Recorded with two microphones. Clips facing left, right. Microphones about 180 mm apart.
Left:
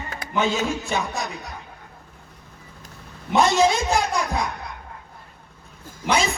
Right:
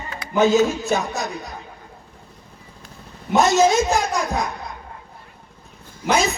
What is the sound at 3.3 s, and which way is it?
Speech, 40° right (ahead or behind).